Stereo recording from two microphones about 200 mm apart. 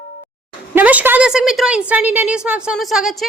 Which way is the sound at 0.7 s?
5° right (ahead or behind).